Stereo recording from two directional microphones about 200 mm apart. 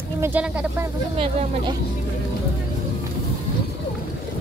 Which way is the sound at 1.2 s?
30° right (ahead or behind).